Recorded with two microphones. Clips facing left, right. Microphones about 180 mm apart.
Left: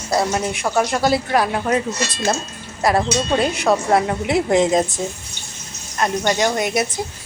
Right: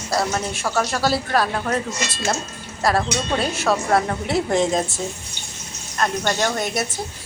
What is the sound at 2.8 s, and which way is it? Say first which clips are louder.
A woman's voice: left 3 dB; 20° left (ahead or behind).